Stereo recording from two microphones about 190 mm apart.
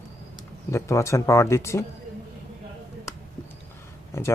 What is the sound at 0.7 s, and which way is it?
Speech, 15° left (ahead or behind).